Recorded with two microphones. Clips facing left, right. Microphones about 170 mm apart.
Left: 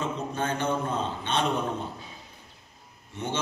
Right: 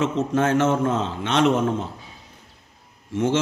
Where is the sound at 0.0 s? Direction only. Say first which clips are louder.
Right 9 dB; 85° right.